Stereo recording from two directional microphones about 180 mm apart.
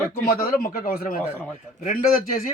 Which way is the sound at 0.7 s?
50° left (ahead or behind).